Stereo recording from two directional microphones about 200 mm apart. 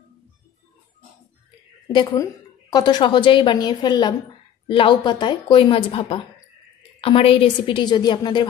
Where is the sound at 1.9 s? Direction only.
20° left (ahead or behind).